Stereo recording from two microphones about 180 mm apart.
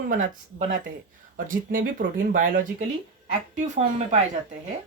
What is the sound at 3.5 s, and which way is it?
Speech, 40° right (ahead or behind).